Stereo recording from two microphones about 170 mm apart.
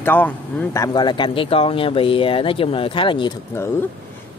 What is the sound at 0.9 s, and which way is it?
Speech, 25° left (ahead or behind).